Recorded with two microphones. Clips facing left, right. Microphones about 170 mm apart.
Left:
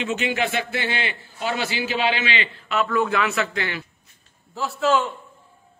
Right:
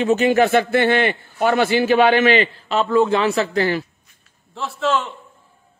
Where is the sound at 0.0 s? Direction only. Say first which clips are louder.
Right 9 dB; 40° right (ahead or behind).